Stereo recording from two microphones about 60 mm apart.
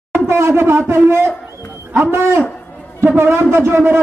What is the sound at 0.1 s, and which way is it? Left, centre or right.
A man's voice, right.